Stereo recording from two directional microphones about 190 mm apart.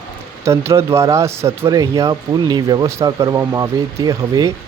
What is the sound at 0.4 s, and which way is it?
A man's voice, 15° right (ahead or behind).